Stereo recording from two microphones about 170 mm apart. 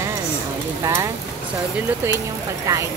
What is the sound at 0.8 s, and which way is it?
Speech, 20° right (ahead or behind).